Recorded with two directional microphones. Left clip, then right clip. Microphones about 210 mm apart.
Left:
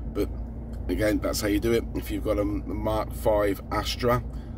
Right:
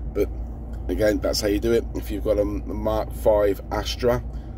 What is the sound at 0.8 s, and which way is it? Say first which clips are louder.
Speech: right 4 dB; centre (ahead or behind).